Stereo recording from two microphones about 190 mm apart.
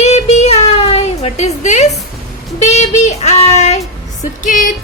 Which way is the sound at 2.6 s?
35° left (ahead or behind).